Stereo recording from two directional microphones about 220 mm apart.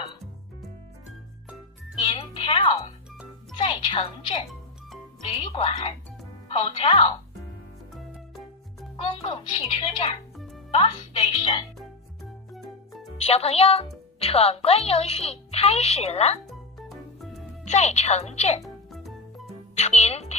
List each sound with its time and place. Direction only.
2.0 s music: 25° left (ahead or behind)
3.5 s a woman's voice: 20° left (ahead or behind)
5.4 s a woman's voice: 25° left (ahead or behind)
8.9 s a woman's voice: 25° left (ahead or behind)
12.5 s music: centre (ahead or behind)
13.2 s a woman's voice: 25° left (ahead or behind)
16.4 s music: centre (ahead or behind)
17.6 s a woman's voice: 30° left (ahead or behind)
18.6 s music: centre (ahead or behind)
19.7 s a woman's voice: 30° left (ahead or behind)